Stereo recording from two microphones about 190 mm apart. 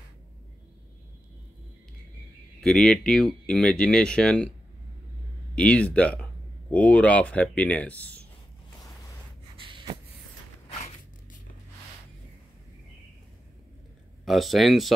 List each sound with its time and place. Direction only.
2.6 s speech: 5° left (ahead or behind)
5.6 s speech: 5° left (ahead or behind)
9.6 s gasp: 30° right (ahead or behind)
14.2 s speech: centre (ahead or behind)